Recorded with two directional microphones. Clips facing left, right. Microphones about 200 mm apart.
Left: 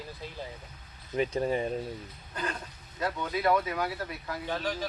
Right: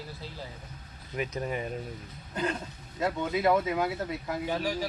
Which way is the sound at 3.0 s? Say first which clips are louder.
Right 3 dB; 25° right (ahead or behind).